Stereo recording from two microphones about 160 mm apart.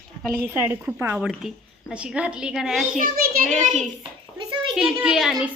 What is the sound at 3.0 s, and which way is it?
Speech, 55° right (ahead or behind).